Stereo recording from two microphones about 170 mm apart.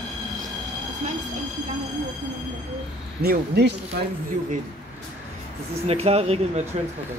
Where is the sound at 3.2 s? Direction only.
70° right (ahead or behind).